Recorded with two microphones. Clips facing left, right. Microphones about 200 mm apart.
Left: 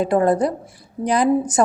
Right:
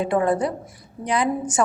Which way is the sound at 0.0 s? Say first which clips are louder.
Left 4 dB; 40° left (ahead or behind).